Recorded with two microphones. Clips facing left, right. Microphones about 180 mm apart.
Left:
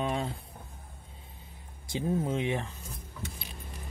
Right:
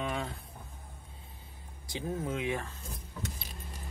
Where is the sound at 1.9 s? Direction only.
25° left (ahead or behind).